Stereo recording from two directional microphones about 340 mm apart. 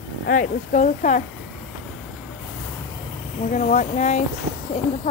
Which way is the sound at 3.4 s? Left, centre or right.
Left.